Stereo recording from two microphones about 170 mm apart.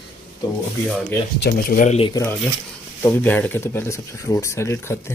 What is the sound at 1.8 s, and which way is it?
Speech, 35° left (ahead or behind).